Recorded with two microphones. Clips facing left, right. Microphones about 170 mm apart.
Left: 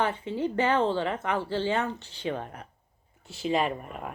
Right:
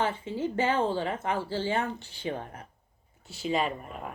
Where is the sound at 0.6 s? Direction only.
10° right (ahead or behind).